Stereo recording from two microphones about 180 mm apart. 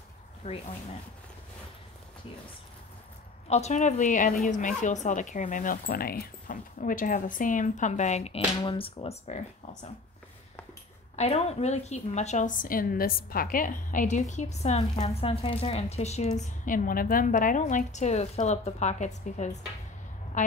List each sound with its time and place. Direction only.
0.4 s a woman's voice: 40° left (ahead or behind)
3.4 s a woman's voice: 35° left (ahead or behind)
11.1 s a woman's voice: 35° left (ahead or behind)